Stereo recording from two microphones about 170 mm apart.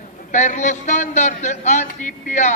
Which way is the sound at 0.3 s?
45° left (ahead or behind).